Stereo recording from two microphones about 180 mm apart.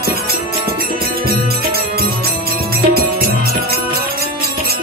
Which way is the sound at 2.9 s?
60° right (ahead or behind).